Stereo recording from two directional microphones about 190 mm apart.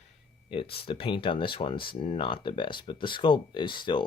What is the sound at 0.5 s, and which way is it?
Speech, 30° left (ahead or behind).